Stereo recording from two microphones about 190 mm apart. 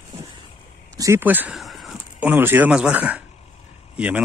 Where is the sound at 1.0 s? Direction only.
15° right (ahead or behind).